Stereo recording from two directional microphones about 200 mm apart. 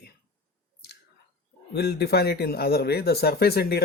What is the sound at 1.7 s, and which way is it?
Speech, 55° left (ahead or behind).